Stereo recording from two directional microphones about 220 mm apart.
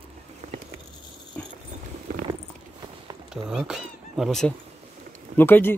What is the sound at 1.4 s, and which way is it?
Dog, 10° left (ahead or behind).